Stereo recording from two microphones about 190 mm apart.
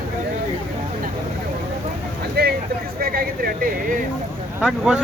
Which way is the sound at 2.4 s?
55° right (ahead or behind).